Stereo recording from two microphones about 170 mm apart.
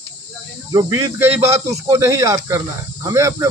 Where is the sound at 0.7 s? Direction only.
20° right (ahead or behind).